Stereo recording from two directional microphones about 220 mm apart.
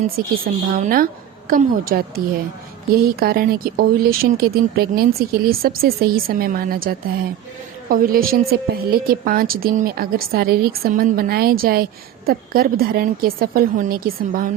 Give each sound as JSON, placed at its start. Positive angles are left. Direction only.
{"t": 0.0, "sound": "a woman's voice", "side_deg": -35}